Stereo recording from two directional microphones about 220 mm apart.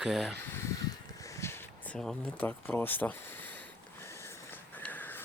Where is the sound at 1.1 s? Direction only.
15° left (ahead or behind).